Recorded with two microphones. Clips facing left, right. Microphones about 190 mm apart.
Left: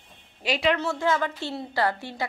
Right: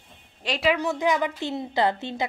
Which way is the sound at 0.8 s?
15° right (ahead or behind).